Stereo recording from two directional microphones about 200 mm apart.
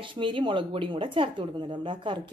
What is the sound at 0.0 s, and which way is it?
A woman's voice, 25° right (ahead or behind).